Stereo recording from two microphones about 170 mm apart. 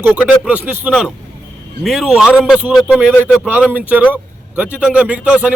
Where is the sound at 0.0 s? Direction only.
10° right (ahead or behind).